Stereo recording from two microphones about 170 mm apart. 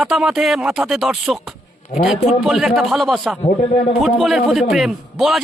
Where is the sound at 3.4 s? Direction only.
40° left (ahead or behind).